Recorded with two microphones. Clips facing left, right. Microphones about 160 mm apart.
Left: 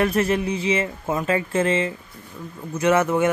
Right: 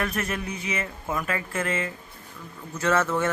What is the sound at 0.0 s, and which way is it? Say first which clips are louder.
Speech: left 9 dB; 30° left (ahead or behind).